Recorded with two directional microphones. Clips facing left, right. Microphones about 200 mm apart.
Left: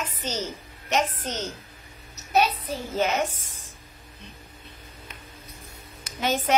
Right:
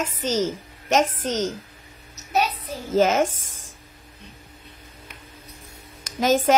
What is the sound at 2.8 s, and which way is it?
Speech, 90° right.